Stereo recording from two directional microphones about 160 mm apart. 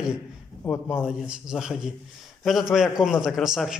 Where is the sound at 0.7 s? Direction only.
10° left (ahead or behind).